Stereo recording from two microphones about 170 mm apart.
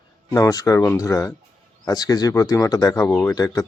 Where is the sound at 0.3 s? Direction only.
20° left (ahead or behind).